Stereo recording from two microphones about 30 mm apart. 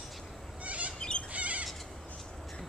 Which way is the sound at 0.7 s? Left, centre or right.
Right.